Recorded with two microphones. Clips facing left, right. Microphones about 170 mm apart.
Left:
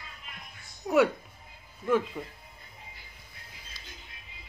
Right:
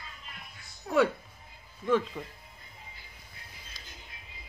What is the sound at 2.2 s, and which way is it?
Speech, 5° left (ahead or behind).